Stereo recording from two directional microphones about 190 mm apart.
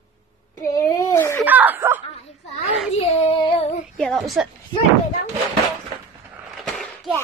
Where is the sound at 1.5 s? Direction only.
10° right (ahead or behind).